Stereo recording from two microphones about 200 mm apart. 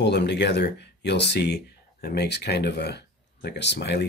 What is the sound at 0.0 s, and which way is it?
Speech, 60° left (ahead or behind).